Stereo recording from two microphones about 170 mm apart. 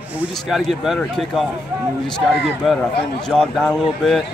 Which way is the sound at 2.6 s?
5° left (ahead or behind).